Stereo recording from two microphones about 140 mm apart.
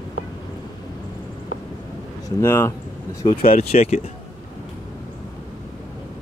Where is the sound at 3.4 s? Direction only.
90° left.